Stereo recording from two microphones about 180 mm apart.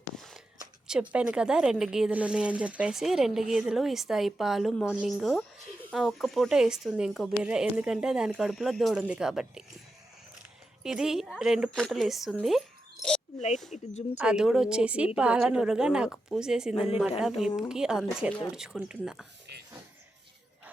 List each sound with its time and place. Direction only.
0.2 s a sound: centre (ahead or behind)
0.9 s speech: 5° right (ahead or behind)
10.8 s speech: 5° right (ahead or behind)
13.7 s speech: 40° left (ahead or behind)
14.2 s speech: 5° right (ahead or behind)